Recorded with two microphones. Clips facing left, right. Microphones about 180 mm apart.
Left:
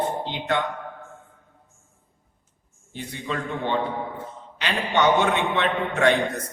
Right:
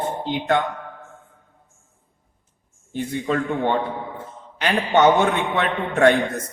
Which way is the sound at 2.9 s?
50° right (ahead or behind).